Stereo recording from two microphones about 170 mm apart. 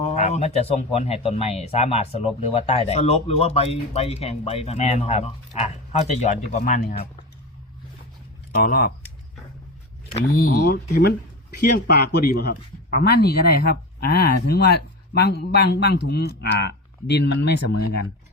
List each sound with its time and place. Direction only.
0.1 s speech: 40° left (ahead or behind); by 7.1 s 55° left (ahead or behind)
8.6 s speech: 65° left (ahead or behind)
10.3 s speech: 60° left (ahead or behind)
11.6 s speech: 70° left (ahead or behind)